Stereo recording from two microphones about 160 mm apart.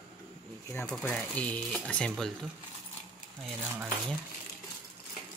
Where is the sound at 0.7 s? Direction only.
15° left (ahead or behind).